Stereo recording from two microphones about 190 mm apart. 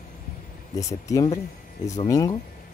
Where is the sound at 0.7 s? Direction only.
15° left (ahead or behind).